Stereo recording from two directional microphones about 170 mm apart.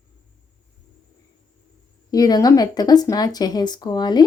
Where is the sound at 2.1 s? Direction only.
20° left (ahead or behind).